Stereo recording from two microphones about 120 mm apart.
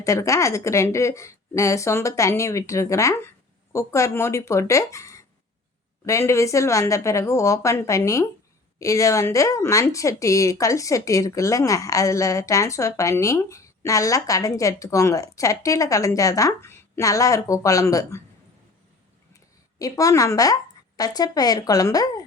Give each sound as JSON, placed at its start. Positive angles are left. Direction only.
{"t": 0.0, "sound": "speech", "side_deg": 25}
{"t": 19.8, "sound": "speech", "side_deg": 30}